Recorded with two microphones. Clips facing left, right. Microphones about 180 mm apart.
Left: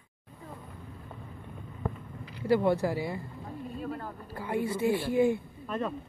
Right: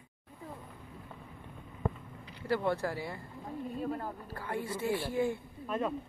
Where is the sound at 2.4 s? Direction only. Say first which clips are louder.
Left 6 dB; 15° left (ahead or behind).